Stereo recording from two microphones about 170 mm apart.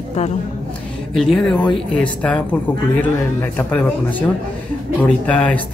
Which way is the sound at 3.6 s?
10° left (ahead or behind).